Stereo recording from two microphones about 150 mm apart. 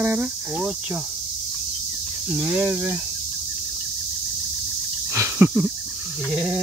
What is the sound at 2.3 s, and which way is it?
Cricket, 10° right (ahead or behind).